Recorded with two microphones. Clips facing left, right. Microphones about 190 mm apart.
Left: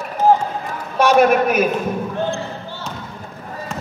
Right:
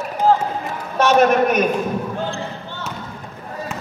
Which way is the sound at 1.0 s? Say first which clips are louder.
Left 1 dB; 10° left (ahead or behind).